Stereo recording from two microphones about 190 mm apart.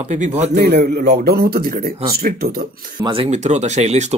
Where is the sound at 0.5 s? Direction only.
55° right (ahead or behind).